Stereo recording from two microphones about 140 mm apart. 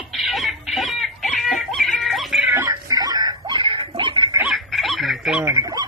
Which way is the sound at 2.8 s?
25° right (ahead or behind).